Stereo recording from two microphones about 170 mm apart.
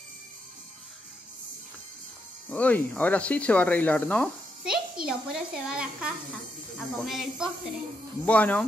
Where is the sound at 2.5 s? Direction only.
10° left (ahead or behind).